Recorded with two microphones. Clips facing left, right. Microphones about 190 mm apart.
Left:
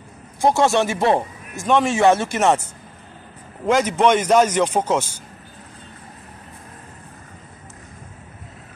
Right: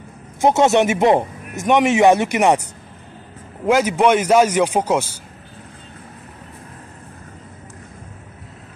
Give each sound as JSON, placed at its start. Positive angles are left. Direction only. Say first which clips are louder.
{"t": 0.4, "sound": "a man's voice", "louder": "right 3 dB", "side_deg": -20}